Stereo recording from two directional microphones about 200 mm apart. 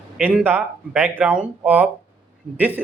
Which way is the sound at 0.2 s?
10° right (ahead or behind).